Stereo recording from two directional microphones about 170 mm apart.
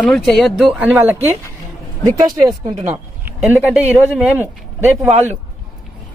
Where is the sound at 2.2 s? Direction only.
20° right (ahead or behind).